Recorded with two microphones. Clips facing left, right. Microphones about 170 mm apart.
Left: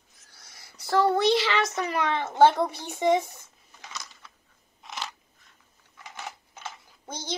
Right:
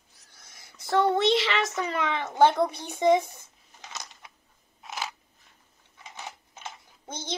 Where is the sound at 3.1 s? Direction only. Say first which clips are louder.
Right 1 dB; 20° right (ahead or behind).